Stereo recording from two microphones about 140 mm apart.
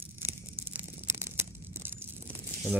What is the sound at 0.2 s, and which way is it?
Tearing, 15° right (ahead or behind).